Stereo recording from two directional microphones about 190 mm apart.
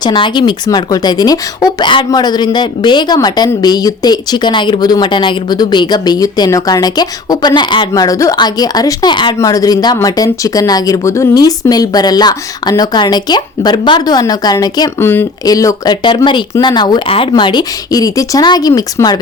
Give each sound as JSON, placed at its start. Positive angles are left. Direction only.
{"t": 0.0, "sound": "speech", "side_deg": 25}